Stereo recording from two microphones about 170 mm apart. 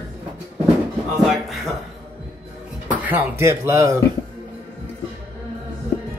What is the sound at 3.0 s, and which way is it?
Speech, 10° right (ahead or behind).